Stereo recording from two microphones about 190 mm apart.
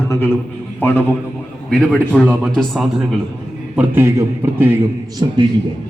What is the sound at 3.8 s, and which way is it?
A man's voice, 15° right (ahead or behind).